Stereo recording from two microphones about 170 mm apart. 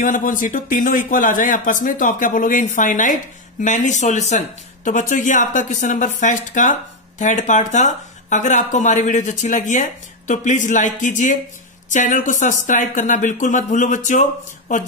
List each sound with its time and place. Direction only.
0.0 s speech: 50° left (ahead or behind)